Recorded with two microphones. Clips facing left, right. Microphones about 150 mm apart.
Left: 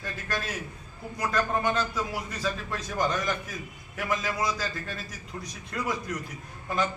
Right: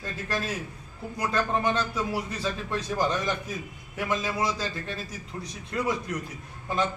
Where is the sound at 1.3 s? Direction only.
30° right (ahead or behind).